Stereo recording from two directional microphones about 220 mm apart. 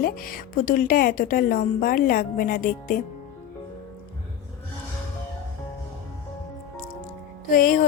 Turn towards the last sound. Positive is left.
turn(degrees=40)  # may be behind; listen again after turning